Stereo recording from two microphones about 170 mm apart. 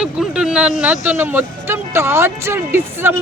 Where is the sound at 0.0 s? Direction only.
5° right (ahead or behind).